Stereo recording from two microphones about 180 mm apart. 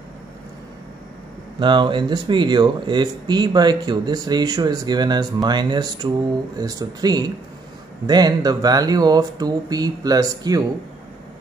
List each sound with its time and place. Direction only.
1.6 s speech: 25° right (ahead or behind)